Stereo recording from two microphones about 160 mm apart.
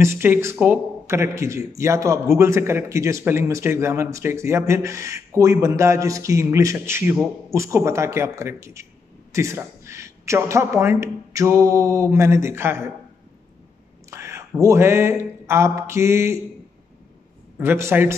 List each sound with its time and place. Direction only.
0.0 s speech: 15° right (ahead or behind)
14.1 s a sound: 15° right (ahead or behind)
14.6 s speech: 15° right (ahead or behind)
17.6 s speech: 15° right (ahead or behind)